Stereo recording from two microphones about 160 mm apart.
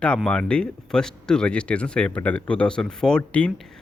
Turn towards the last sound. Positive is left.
turn(degrees=5)  # may be behind; listen again after turning